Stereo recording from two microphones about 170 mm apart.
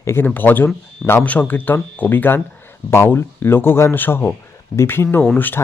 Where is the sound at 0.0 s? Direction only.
15° left (ahead or behind).